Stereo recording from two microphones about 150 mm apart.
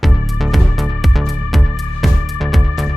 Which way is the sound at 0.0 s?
Centre (ahead or behind).